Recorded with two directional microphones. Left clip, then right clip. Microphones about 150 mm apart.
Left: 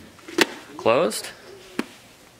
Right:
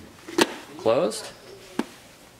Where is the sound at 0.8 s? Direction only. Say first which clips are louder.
Left 2 dB; 25° left (ahead or behind).